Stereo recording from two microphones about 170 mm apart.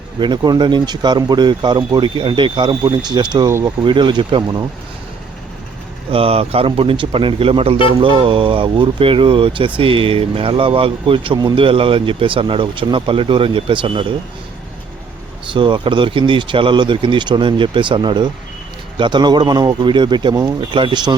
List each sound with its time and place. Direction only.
0.2 s speech: 25° right (ahead or behind)
6.1 s speech: 35° right (ahead or behind)
15.5 s speech: 30° right (ahead or behind)